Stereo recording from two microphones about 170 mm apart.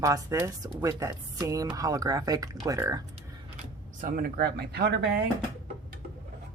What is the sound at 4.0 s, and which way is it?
Speech, 55° right (ahead or behind).